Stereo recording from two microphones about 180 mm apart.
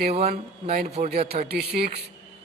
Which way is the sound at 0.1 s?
35° right (ahead or behind).